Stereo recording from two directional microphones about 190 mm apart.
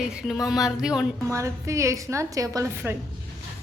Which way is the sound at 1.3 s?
15° right (ahead or behind).